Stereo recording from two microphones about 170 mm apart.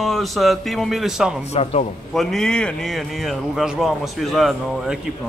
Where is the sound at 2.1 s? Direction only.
5° left (ahead or behind).